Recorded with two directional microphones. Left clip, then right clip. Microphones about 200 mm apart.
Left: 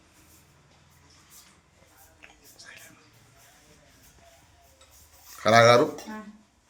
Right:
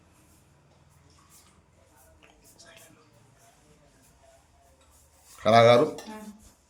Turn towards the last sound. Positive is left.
turn(degrees=-5)  # may be behind; listen again after turning